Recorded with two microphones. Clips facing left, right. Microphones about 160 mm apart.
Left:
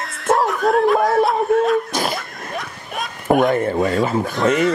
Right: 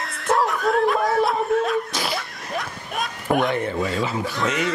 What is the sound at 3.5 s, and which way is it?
Speech, 45° left (ahead or behind).